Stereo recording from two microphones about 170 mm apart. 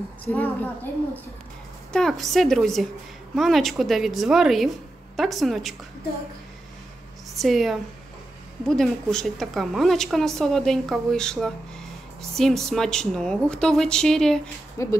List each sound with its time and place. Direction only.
0.2 s a woman's voice: 10° left (ahead or behind)
1.9 s a woman's voice: 5° left (ahead or behind)
7.3 s a woman's voice: centre (ahead or behind)
14.8 s a woman's voice: 15° left (ahead or behind)